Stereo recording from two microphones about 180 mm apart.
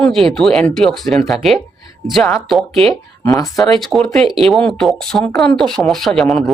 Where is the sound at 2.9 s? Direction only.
20° left (ahead or behind).